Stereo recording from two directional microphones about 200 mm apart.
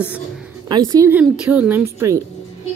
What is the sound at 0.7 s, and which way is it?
Speech, 20° right (ahead or behind).